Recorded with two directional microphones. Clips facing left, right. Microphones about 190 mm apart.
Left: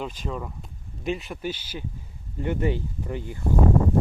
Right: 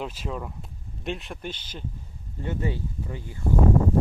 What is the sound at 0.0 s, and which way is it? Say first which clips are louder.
Speech: left 1 dB; 5° right (ahead or behind).